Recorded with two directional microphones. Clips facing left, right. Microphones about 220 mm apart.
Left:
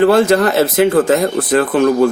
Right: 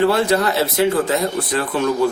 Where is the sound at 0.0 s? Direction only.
50° left (ahead or behind).